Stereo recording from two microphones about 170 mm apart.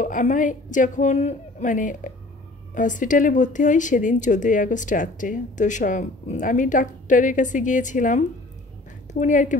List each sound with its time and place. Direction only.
0.0 s speech: 50° left (ahead or behind)